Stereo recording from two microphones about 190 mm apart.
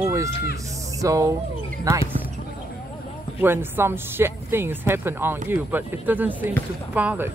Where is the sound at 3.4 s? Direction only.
10° right (ahead or behind).